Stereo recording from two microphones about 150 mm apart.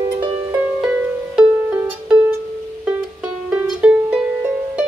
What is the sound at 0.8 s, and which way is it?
Music, 5° right (ahead or behind).